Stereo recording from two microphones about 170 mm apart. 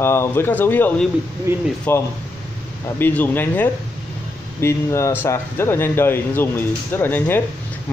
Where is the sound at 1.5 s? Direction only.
15° right (ahead or behind).